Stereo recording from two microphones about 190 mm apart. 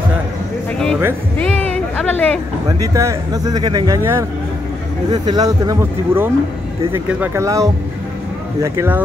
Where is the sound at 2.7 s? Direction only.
15° right (ahead or behind).